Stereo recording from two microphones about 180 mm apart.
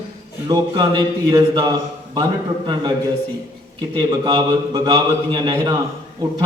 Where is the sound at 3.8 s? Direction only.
25° right (ahead or behind).